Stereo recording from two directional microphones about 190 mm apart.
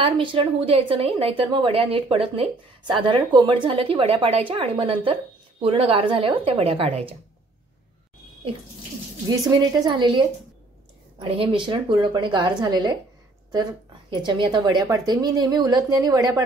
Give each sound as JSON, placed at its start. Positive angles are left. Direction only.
{"t": 0.0, "sound": "a woman's voice", "side_deg": -25}
{"t": 9.3, "sound": "a woman's voice", "side_deg": -20}
{"t": 14.1, "sound": "a woman's voice", "side_deg": -25}